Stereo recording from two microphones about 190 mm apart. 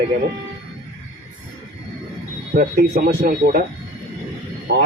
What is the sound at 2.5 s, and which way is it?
Speech, 50° right (ahead or behind).